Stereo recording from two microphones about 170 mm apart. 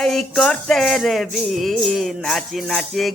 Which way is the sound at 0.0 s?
Centre (ahead or behind).